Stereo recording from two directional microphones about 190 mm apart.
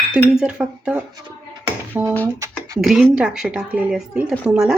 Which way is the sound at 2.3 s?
15° right (ahead or behind).